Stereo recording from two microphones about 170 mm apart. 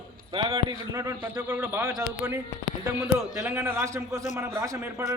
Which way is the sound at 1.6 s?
15° right (ahead or behind).